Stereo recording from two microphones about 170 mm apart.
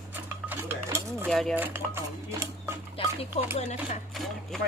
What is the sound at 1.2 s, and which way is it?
Speech, centre (ahead or behind).